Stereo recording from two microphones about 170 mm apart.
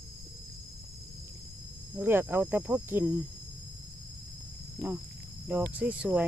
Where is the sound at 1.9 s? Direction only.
10° right (ahead or behind).